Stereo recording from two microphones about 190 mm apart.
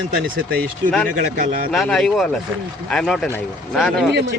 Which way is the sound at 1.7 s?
Centre (ahead or behind).